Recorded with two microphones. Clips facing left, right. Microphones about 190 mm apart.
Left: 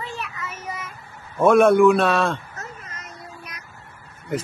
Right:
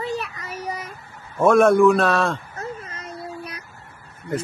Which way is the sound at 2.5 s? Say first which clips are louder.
Right 6 dB; 30° right (ahead or behind).